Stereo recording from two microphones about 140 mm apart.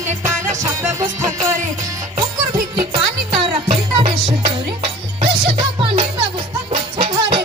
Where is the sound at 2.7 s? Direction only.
40° right (ahead or behind).